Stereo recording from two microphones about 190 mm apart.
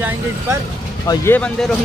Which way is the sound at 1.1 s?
10° left (ahead or behind).